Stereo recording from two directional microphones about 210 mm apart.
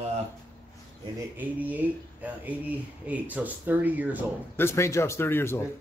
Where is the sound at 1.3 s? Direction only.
10° right (ahead or behind).